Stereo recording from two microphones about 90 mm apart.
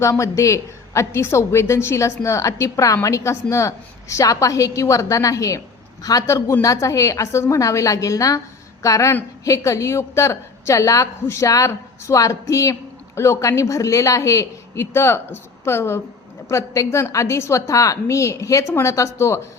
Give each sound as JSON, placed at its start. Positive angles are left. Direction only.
{"t": 0.0, "sound": "a woman's voice", "side_deg": 35}